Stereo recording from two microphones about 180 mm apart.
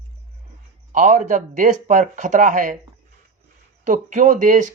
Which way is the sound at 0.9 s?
45° right (ahead or behind).